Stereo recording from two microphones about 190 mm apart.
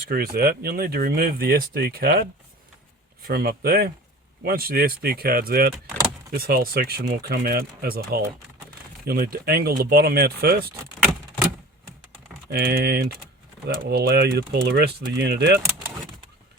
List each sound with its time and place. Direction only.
0.1 s speech: 50° right (ahead or behind)
3.2 s speech: 55° right (ahead or behind)
12.5 s speech: 55° right (ahead or behind)